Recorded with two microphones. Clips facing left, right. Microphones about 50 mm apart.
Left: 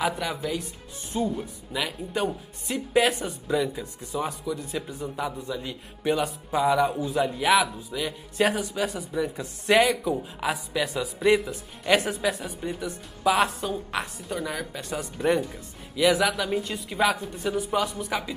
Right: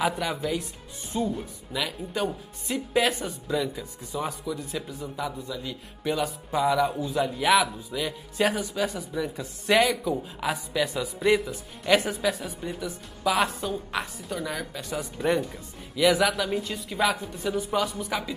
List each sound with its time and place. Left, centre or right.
0.2 s speech: centre